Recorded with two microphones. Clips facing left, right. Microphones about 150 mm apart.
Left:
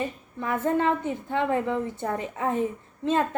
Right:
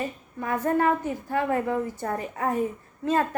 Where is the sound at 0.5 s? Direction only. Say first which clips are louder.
Right 1 dB; 25° left (ahead or behind).